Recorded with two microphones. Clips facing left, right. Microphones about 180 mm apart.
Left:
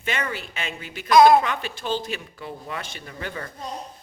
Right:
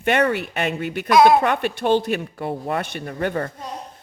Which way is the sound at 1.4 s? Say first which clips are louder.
Right 8 dB; 60° right (ahead or behind).